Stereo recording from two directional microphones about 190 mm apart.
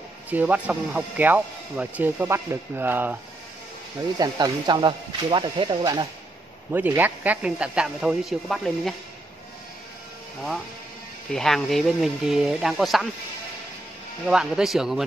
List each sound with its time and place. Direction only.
0.3 s speech: 10° right (ahead or behind)
4.2 s speech: 20° right (ahead or behind)
6.7 s speech: 10° right (ahead or behind)
11.3 s speech: centre (ahead or behind)
14.2 s speech: 5° right (ahead or behind)